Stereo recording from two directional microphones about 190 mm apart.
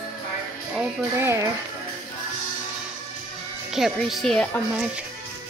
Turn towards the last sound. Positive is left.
turn(degrees=0)  # may be behind; listen again after turning